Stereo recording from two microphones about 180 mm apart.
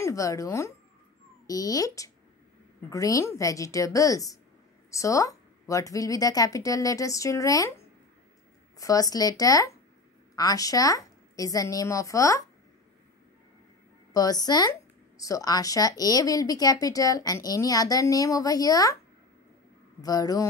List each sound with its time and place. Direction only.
0.0 s a woman's voice: 20° left (ahead or behind)
14.1 s speech: 20° left (ahead or behind)
20.0 s speech: 20° left (ahead or behind)